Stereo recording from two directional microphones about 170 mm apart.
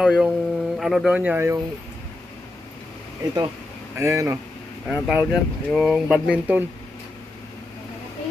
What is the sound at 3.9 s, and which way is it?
Speech, 15° right (ahead or behind).